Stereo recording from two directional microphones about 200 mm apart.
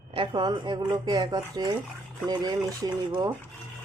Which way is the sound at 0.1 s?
25° right (ahead or behind).